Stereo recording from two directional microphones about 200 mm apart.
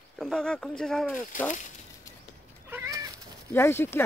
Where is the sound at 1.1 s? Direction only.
40° left (ahead or behind).